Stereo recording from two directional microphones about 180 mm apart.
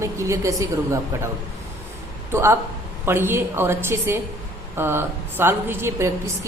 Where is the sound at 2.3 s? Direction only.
15° right (ahead or behind).